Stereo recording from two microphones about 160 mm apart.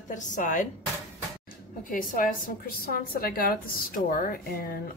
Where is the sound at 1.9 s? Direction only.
60° left (ahead or behind).